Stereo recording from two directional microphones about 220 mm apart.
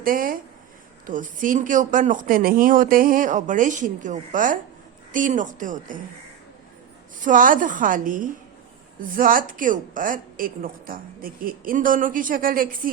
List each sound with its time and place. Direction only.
0.0 s a woman's voice: 40° right (ahead or behind)
7.2 s a woman's voice: 35° right (ahead or behind)